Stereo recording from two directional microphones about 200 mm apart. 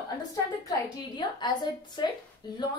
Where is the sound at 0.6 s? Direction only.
20° left (ahead or behind).